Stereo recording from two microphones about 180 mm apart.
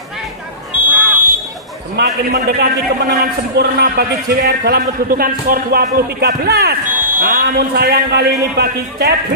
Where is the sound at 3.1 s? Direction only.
60° right (ahead or behind).